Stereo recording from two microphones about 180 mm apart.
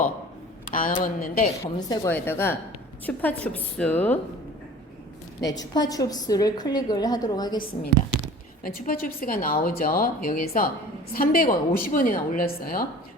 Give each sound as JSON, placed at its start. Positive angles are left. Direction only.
{"t": 0.7, "sound": "a woman's voice", "side_deg": 50}
{"t": 1.6, "sound": "a woman's voice", "side_deg": 15}
{"t": 5.4, "sound": "a woman's voice", "side_deg": 20}
{"t": 8.6, "sound": "a woman's voice", "side_deg": 55}